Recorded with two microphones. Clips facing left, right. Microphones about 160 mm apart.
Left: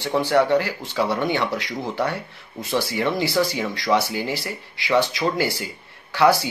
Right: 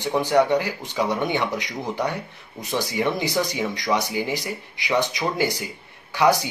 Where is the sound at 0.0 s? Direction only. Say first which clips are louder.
Even; 15° right (ahead or behind).